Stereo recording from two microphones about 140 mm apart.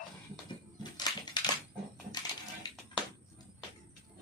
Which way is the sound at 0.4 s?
30° left (ahead or behind).